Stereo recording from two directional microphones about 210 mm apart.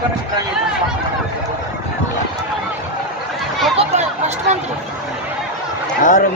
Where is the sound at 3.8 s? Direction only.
30° right (ahead or behind).